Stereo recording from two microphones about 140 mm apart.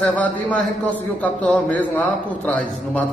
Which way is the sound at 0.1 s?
10° left (ahead or behind).